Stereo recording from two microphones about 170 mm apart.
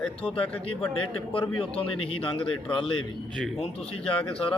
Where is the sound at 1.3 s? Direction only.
30° left (ahead or behind).